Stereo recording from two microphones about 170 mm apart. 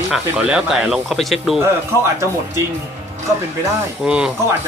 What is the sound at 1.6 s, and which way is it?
Speech, 15° right (ahead or behind).